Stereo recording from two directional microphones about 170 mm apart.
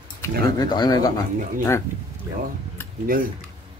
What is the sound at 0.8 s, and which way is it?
Speech, 20° left (ahead or behind).